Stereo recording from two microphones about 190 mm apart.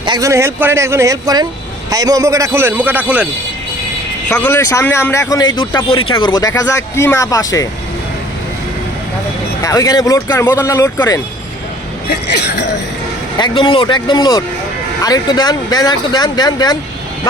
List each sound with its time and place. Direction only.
0.0 s a man's voice: 20° right (ahead or behind)
4.3 s speech: 5° left (ahead or behind)
5.5 s speech: 25° left (ahead or behind)
9.6 s speech: 20° left (ahead or behind)
12.0 s speech: 60° left (ahead or behind)
13.4 s speech: 25° left (ahead or behind)